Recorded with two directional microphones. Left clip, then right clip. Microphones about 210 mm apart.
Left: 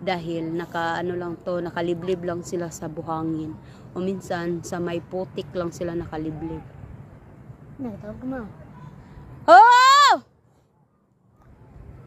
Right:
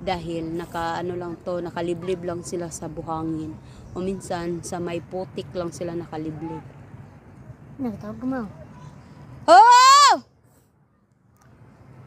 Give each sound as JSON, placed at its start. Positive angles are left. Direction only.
{"t": 0.0, "sound": "speech", "side_deg": -5}
{"t": 7.8, "sound": "speech", "side_deg": -45}
{"t": 9.4, "sound": "a sound", "side_deg": -5}